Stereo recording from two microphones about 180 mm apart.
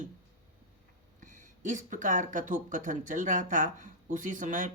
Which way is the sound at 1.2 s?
45° right (ahead or behind).